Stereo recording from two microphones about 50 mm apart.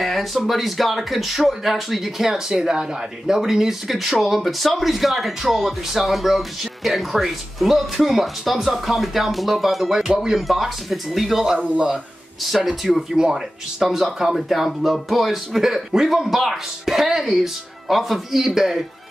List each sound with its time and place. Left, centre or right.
0.0 s speech: centre
11.5 s speech: right
12.4 s speech: centre
13.1 s speech: centre